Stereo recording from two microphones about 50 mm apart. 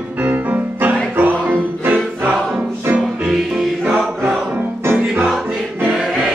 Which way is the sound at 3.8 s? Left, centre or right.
Right.